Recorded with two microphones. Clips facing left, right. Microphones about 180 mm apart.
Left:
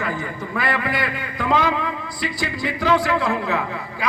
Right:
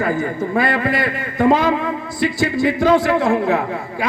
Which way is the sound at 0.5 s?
25° right (ahead or behind).